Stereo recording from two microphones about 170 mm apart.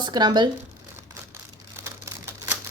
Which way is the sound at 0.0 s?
25° right (ahead or behind).